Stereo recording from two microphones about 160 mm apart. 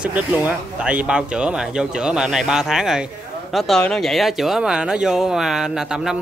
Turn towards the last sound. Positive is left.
turn(degrees=-5)  # may be behind; listen again after turning